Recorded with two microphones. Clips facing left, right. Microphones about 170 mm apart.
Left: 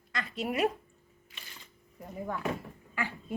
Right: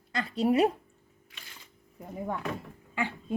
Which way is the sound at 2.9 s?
20° right (ahead or behind).